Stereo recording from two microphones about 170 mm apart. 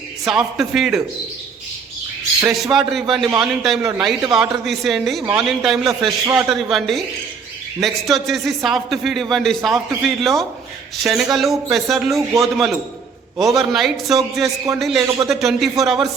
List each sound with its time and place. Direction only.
0.3 s a man's voice: 5° right (ahead or behind)
2.7 s a man's voice: centre (ahead or behind)
14.4 s a man's voice: 20° right (ahead or behind)
14.8 s a man's voice: centre (ahead or behind)